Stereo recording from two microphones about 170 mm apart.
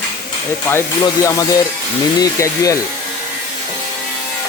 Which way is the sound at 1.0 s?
20° left (ahead or behind).